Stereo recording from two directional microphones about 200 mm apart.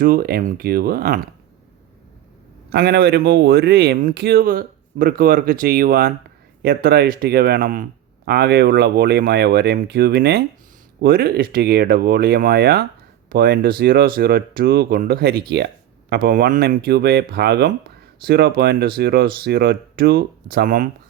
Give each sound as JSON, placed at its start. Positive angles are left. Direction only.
{"t": 0.0, "sound": "speech", "side_deg": -45}
{"t": 2.6, "sound": "speech", "side_deg": -50}